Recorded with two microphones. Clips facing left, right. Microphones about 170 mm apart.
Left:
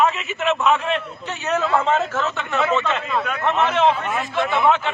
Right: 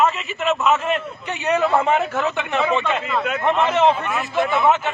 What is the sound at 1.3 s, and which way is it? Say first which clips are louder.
A man's voice: right 2 dB; 15° right (ahead or behind).